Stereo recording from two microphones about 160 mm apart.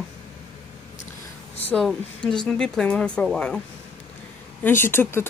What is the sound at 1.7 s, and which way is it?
Speech, 5° left (ahead or behind).